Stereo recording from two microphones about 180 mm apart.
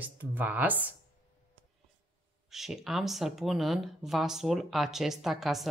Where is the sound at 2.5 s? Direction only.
Centre (ahead or behind).